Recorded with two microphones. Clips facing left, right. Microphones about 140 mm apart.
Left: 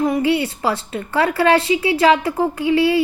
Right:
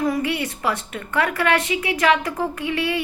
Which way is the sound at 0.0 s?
25° left (ahead or behind).